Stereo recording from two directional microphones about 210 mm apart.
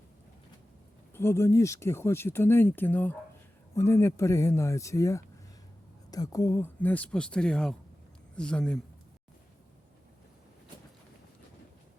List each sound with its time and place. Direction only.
1.1 s speech: 10° left (ahead or behind)